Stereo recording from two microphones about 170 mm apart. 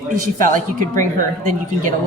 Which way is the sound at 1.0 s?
50° right (ahead or behind).